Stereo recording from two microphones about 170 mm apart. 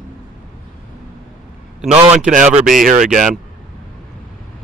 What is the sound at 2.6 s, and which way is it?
Speech, 55° right (ahead or behind).